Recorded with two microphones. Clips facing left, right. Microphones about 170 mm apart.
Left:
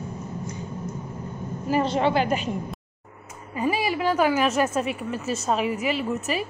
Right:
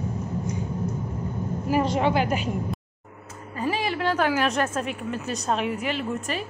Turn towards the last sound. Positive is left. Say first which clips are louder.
# left 2 dB
turn(degrees=5)  # may be behind; listen again after turning